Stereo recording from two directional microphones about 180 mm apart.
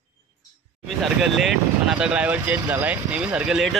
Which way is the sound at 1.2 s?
Centre (ahead or behind).